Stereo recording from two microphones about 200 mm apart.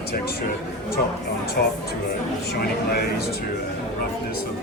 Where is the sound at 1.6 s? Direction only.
45° left (ahead or behind).